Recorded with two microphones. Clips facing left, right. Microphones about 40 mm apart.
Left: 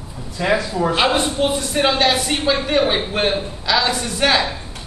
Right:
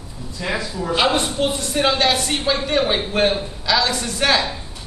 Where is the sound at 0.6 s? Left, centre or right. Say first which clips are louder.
Left 6 dB; left.